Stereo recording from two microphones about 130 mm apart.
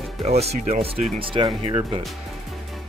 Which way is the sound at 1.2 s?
40° right (ahead or behind).